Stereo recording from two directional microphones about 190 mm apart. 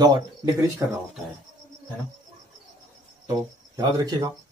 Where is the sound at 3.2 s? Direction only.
20° right (ahead or behind).